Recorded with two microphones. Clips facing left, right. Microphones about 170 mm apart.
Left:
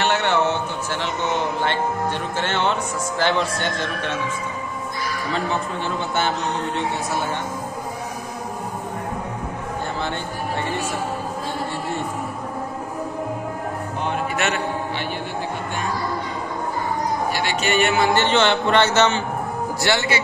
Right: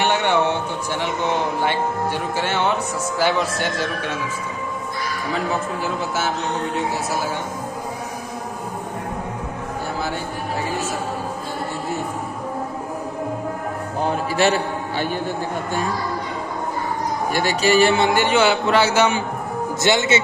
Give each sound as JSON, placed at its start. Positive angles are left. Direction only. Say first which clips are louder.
{"t": 0.0, "sound": "a sound", "louder": "right 1 dB", "side_deg": -15}
{"t": 1.6, "sound": "speech", "louder": "right 1 dB", "side_deg": -10}
{"t": 14.0, "sound": "a man's voice", "louder": "right 5 dB", "side_deg": -35}
{"t": 17.3, "sound": "speech", "louder": "right 4 dB", "side_deg": -40}
{"t": 18.1, "sound": "a man's voice", "louder": "right 1 dB", "side_deg": -10}